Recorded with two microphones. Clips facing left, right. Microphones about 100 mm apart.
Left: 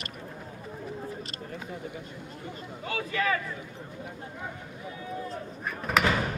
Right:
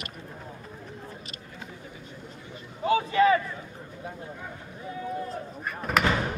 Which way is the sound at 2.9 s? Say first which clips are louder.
Right 8 dB; 25° right (ahead or behind).